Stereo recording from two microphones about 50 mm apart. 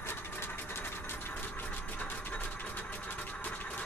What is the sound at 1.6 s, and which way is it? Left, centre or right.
Music, left.